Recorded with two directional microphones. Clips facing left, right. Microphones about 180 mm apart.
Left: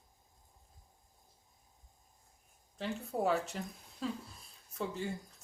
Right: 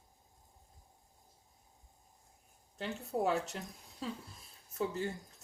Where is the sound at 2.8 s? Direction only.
Centre (ahead or behind).